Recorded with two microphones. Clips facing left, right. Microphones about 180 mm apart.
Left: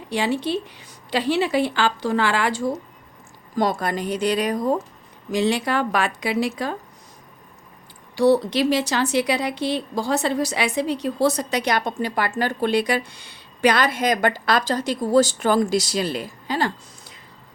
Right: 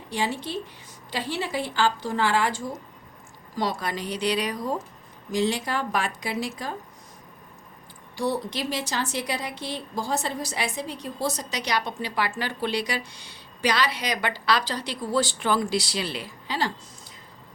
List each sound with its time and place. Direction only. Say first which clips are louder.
0.1 s speech: left 6 dB; 75° left (ahead or behind)
3.5 s a woman's voice: left 6 dB; 50° left (ahead or behind)
5.3 s speech: left 4 dB; 70° left (ahead or behind)
8.1 s a woman's voice: left 10 dB; 80° left; by 16.7 s 50° left (ahead or behind)